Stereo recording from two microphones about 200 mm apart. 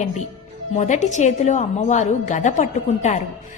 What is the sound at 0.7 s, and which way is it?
A woman's voice, 35° left (ahead or behind).